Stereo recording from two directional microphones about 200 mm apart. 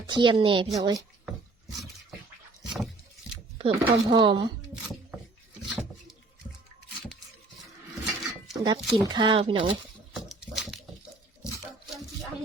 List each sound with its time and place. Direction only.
0.1 s speech: 25° right (ahead or behind)
3.6 s speech: 25° right (ahead or behind)
5.6 s a sound: centre (ahead or behind)
8.5 s speech: 20° right (ahead or behind)
8.8 s speech: centre (ahead or behind)
9.0 s speech: 20° right (ahead or behind)
10.2 s patter: centre (ahead or behind)